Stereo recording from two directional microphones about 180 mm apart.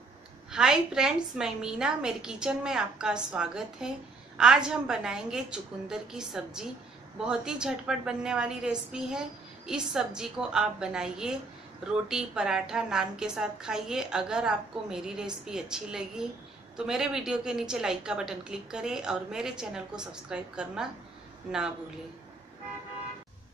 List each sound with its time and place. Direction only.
0.5 s a woman's voice: 5° right (ahead or behind)